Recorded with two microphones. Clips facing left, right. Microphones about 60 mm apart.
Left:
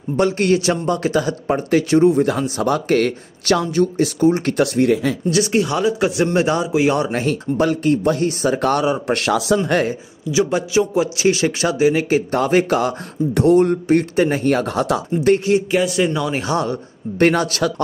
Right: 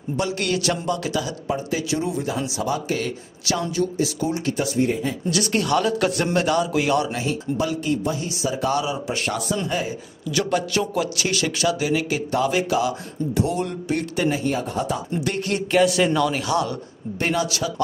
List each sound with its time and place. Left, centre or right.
0.2 s a man's voice: left
3.7 s speech: left
4.6 s speech: left
5.3 s speech: centre
6.3 s a man's voice: left
7.1 s speech: left
9.1 s speech: left
9.7 s speech: left
10.3 s a man's voice: centre; by 15.0 s left
15.7 s speech: centre
16.3 s a man's voice: left
17.2 s speech: left